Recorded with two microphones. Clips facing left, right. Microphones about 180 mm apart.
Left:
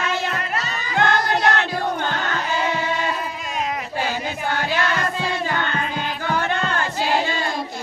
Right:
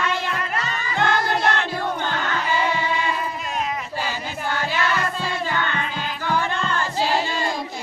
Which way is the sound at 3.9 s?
55° left (ahead or behind).